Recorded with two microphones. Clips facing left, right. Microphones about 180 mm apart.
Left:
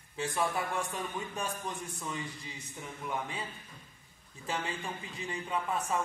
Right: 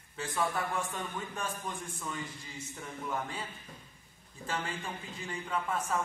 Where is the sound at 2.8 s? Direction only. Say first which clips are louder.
Even; 15° left (ahead or behind).